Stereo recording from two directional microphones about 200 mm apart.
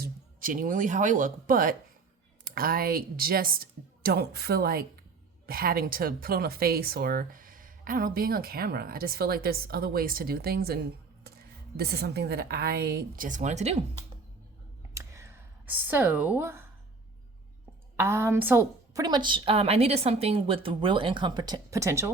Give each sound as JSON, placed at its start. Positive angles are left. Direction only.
{"t": 0.0, "sound": "speech", "side_deg": -45}
{"t": 14.9, "sound": "a sound", "side_deg": -15}
{"t": 17.9, "sound": "a woman's voice", "side_deg": -10}